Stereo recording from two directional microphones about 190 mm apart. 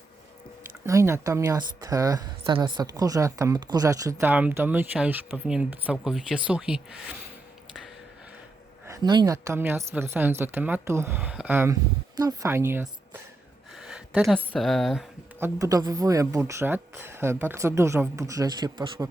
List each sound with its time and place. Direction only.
0.9 s a woman's voice: 15° right (ahead or behind)
8.9 s a woman's voice: 20° right (ahead or behind)
13.8 s speech: 5° right (ahead or behind)
15.4 s a woman's voice: 15° right (ahead or behind)